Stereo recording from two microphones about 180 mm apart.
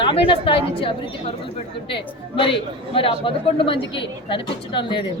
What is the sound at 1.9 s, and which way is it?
A woman's voice, 30° left (ahead or behind).